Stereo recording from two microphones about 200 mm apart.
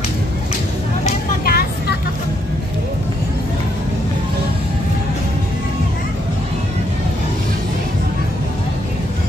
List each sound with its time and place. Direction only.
1.0 s vehicle: 50° left (ahead or behind)